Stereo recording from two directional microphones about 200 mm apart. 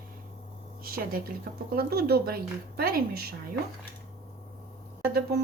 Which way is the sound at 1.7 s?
50° right (ahead or behind).